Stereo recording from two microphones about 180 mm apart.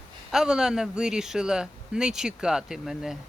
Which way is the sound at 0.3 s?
5° right (ahead or behind).